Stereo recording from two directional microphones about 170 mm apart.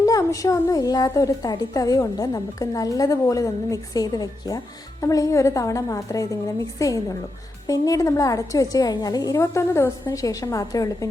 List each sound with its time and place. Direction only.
0.0 s a woman's voice: 20° left (ahead or behind)